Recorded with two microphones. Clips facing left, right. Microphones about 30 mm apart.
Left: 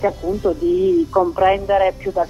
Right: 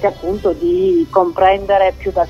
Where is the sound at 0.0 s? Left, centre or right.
Right.